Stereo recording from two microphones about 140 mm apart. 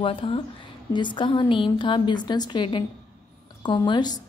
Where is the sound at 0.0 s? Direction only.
40° left (ahead or behind).